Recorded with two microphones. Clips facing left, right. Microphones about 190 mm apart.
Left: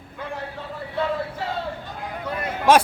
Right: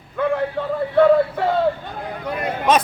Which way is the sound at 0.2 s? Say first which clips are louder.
Right 12 dB; 60° right (ahead or behind).